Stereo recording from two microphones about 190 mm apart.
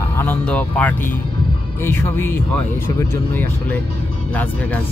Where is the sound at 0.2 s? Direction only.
10° left (ahead or behind).